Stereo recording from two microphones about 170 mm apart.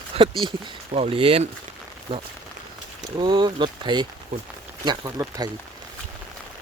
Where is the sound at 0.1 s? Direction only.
35° right (ahead or behind); by 5.5 s 15° right (ahead or behind).